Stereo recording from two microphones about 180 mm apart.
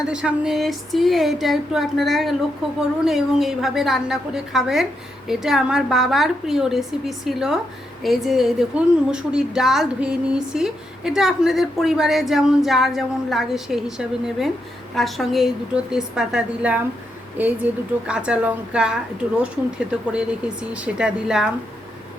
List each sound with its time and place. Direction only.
0.0 s a woman's voice: 5° right (ahead or behind)
20.1 s a woman's voice: 5° right (ahead or behind)